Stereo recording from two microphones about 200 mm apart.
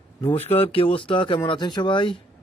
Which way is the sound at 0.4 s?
30° left (ahead or behind).